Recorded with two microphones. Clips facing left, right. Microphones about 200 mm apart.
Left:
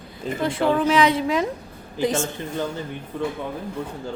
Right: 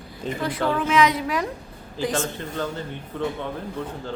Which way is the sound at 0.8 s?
30° left (ahead or behind).